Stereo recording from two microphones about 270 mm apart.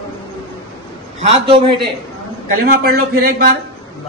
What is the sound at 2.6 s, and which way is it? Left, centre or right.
Speech, right.